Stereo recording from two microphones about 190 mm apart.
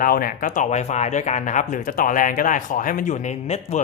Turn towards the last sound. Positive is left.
turn(degrees=35)  # may be behind; listen again after turning